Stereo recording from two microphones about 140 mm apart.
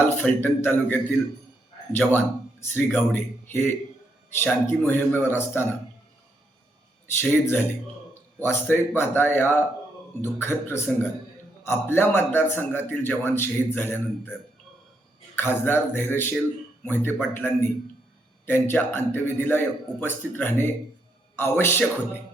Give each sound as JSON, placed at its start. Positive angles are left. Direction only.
{"t": 0.0, "sound": "a man's voice", "side_deg": 15}
{"t": 7.2, "sound": "a man's voice", "side_deg": 15}
{"t": 15.4, "sound": "a man's voice", "side_deg": 15}